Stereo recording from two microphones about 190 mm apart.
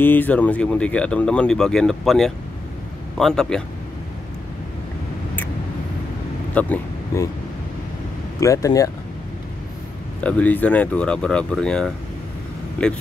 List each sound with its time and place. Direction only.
0.0 s speech: 10° left (ahead or behind)
6.5 s speech: 10° left (ahead or behind)
8.4 s speech: 15° left (ahead or behind)
10.2 s speech: 10° left (ahead or behind)